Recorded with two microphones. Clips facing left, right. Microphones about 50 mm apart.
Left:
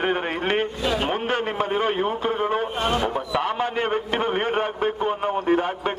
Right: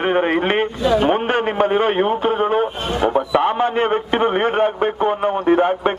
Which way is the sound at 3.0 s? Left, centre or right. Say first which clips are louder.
Right 8 dB; right.